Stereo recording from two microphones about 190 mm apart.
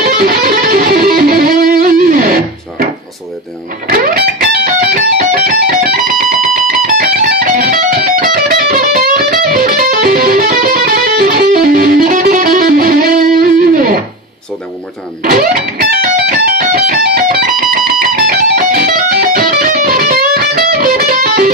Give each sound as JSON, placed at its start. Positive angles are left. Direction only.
{"t": 0.0, "sound": "music", "side_deg": -50}
{"t": 3.9, "sound": "music", "side_deg": -50}
{"t": 15.2, "sound": "music", "side_deg": -50}